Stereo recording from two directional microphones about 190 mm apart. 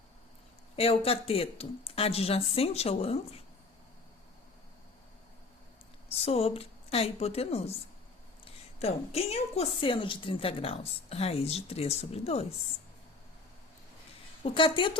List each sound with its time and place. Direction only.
0.8 s a woman's voice: 30° left (ahead or behind)
6.1 s a woman's voice: 30° left (ahead or behind)
8.8 s a woman's voice: 35° left (ahead or behind)
14.4 s a woman's voice: 25° left (ahead or behind)